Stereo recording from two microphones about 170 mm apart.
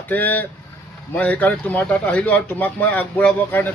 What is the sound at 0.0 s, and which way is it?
Speech, 10° left (ahead or behind).